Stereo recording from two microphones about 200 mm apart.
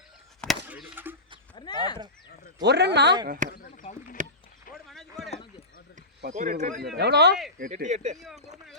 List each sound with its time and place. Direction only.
0.4 s chop: 5° right (ahead or behind)
1.5 s a sound: 20° left (ahead or behind)
2.6 s speech: 55° right (ahead or behind)
3.2 s speech: 40° right (ahead or behind)
3.5 s speech: 45° left (ahead or behind)
4.9 s speech: centre (ahead or behind)
5.3 s a sound: 30° left (ahead or behind)
6.2 s speech: 45° right (ahead or behind)
6.9 s speech: 55° right (ahead or behind)
7.6 s speech: 40° right (ahead or behind)
8.2 s speech: centre (ahead or behind)